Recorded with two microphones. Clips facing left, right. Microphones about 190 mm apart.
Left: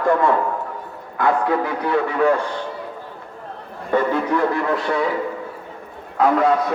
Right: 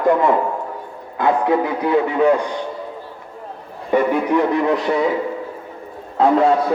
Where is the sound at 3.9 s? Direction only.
15° right (ahead or behind).